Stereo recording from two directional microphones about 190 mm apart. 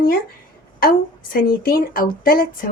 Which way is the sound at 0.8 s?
50° left (ahead or behind).